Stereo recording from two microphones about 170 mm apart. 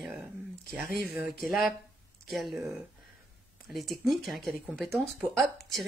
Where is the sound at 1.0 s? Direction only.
10° right (ahead or behind).